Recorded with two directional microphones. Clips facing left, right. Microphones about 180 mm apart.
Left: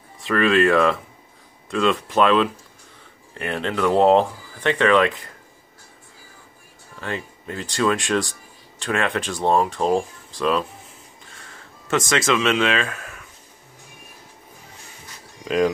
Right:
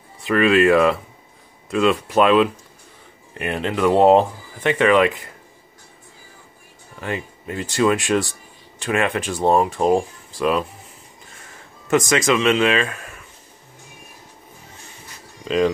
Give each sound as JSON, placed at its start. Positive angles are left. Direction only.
{"t": 0.3, "sound": "speech", "side_deg": -10}
{"t": 7.0, "sound": "speech", "side_deg": -10}
{"t": 12.1, "sound": "speech", "side_deg": -15}
{"t": 12.4, "sound": "speech", "side_deg": -5}
{"t": 15.4, "sound": "speech", "side_deg": 5}